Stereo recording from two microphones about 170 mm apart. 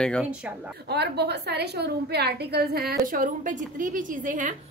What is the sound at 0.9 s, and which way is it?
A woman's voice, 75° right (ahead or behind).